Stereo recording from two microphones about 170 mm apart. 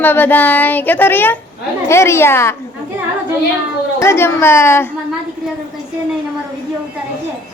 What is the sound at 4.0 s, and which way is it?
Speech, 15° left (ahead or behind).